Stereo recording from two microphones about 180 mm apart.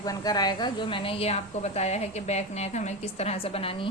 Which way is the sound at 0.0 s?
20° left (ahead or behind).